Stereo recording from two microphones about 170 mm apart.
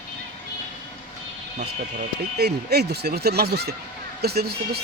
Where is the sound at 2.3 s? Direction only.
70° right (ahead or behind).